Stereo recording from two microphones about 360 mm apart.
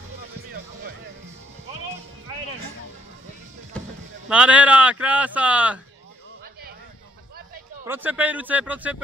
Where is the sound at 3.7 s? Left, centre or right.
Centre.